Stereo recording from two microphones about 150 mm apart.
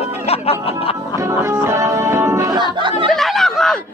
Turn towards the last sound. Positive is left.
turn(degrees=5)  # may be behind; listen again after turning